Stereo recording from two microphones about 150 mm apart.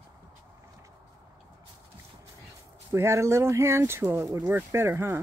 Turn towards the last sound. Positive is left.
turn(degrees=-15)  # may be behind; listen again after turning